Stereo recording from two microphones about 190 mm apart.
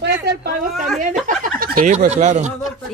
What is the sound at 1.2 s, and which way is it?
Speech, 45° right (ahead or behind).